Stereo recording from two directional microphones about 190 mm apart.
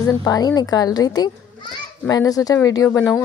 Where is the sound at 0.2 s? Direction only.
20° left (ahead or behind).